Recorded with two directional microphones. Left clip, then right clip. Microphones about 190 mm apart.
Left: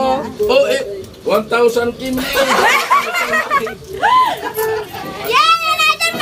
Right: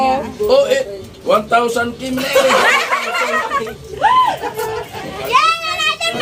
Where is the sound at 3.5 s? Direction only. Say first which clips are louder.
Left 3 dB; 40° left (ahead or behind).